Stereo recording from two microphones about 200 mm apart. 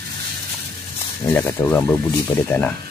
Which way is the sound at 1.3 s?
10° left (ahead or behind).